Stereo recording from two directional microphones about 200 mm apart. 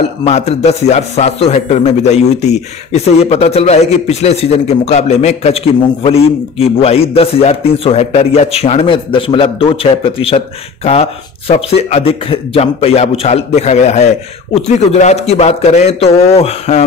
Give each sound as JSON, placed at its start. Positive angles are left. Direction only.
{"t": 0.2, "sound": "a man's voice", "side_deg": 30}